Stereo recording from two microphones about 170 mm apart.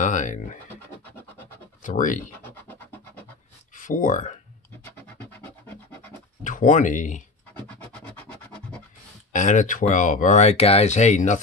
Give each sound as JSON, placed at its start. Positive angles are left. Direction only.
{"t": 0.0, "sound": "speech", "side_deg": 45}
{"t": 1.8, "sound": "speech", "side_deg": 50}
{"t": 2.4, "sound": "rub", "side_deg": 10}
{"t": 3.7, "sound": "speech", "side_deg": 50}
{"t": 5.4, "sound": "music", "side_deg": 10}
{"t": 6.4, "sound": "speech", "side_deg": 50}
{"t": 7.5, "sound": "scratch", "side_deg": 10}
{"t": 9.3, "sound": "speech", "side_deg": 50}